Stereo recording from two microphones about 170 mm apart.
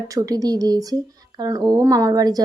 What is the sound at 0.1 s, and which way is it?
Speech, 20° right (ahead or behind).